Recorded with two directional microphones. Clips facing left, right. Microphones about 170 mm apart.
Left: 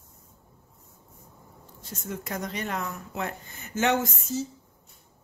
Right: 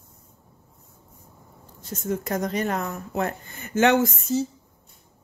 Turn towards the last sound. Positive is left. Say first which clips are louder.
# right 6 dB
turn(degrees=-70)  # may be behind; listen again after turning